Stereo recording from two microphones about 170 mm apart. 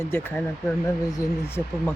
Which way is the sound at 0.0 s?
15° left (ahead or behind).